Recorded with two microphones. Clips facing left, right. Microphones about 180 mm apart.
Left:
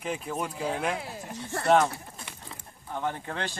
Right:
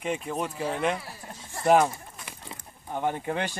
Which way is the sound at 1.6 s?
10° right (ahead or behind).